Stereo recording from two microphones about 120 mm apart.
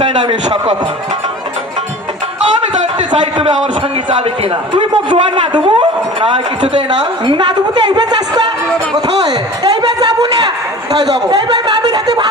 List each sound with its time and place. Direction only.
0.3 s a man's voice: 50° right (ahead or behind)
4.7 s a man's voice: 40° right (ahead or behind)
10.0 s a sound: 35° right (ahead or behind)
11.3 s a man's voice: 35° right (ahead or behind)